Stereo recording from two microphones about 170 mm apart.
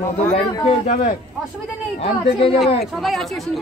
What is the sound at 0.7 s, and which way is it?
Speech, 45° left (ahead or behind).